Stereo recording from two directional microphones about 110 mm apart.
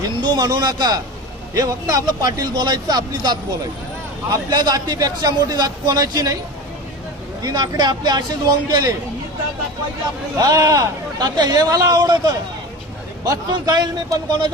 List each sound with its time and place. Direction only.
0.2 s speech: 40° right (ahead or behind)
7.4 s speech: 40° right (ahead or behind)
10.3 s speech: 35° right (ahead or behind)